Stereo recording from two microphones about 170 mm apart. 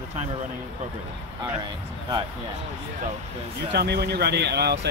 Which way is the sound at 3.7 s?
75° right (ahead or behind).